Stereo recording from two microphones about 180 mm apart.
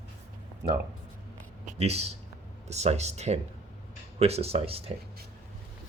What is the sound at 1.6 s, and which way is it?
Speech, 35° right (ahead or behind).